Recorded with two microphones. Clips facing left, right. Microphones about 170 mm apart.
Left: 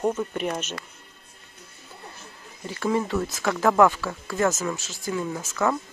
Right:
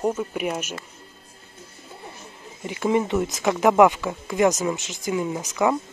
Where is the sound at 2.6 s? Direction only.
20° right (ahead or behind).